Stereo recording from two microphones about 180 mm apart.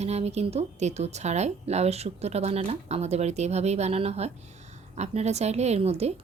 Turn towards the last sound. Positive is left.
turn(degrees=-35)  # may be behind; listen again after turning